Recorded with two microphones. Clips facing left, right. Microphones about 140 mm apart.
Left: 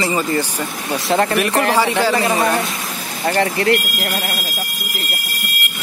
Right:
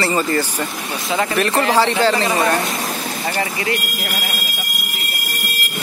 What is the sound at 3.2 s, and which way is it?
Speech, 55° left (ahead or behind).